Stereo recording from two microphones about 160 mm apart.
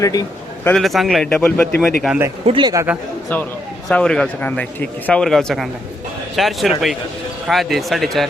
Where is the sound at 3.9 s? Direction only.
5° left (ahead or behind).